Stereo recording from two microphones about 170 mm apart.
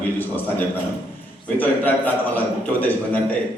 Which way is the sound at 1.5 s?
10° left (ahead or behind).